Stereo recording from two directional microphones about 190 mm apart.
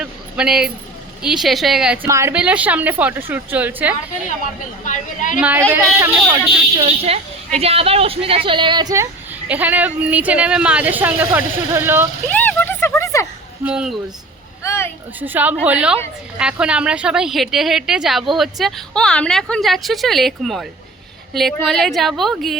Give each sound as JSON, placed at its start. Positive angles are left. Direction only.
{"t": 0.0, "sound": "a sound", "side_deg": -5}
{"t": 1.2, "sound": "a woman's voice", "side_deg": 0}
{"t": 4.9, "sound": "a woman's voice", "side_deg": 40}
{"t": 5.4, "sound": "a woman's voice", "side_deg": -10}
{"t": 6.7, "sound": "speech", "side_deg": -30}
{"t": 9.5, "sound": "a woman's voice", "side_deg": -10}
{"t": 12.3, "sound": "a sound", "side_deg": 10}
{"t": 13.7, "sound": "a woman's voice", "side_deg": -5}
{"t": 14.6, "sound": "a sound", "side_deg": 15}
{"t": 15.2, "sound": "a woman's voice", "side_deg": -10}